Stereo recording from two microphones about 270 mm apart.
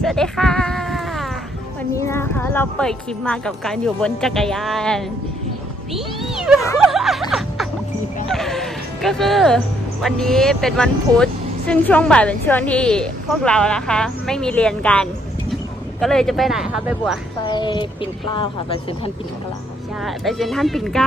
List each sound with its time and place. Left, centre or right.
0.0 s a sound: centre
2.0 s speech: centre
6.9 s a sound: centre
8.3 s music: centre
10.0 s speech: centre
17.4 s speech: centre
20.0 s speech: centre